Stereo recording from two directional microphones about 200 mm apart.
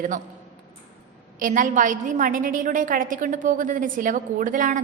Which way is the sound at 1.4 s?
40° right (ahead or behind).